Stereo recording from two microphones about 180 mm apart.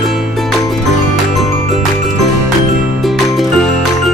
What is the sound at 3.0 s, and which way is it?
Music, centre (ahead or behind).